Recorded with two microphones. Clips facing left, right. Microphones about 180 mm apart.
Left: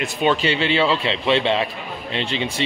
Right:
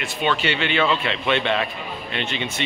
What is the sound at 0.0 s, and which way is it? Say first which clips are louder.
Speech: left 4 dB; 35° left (ahead or behind).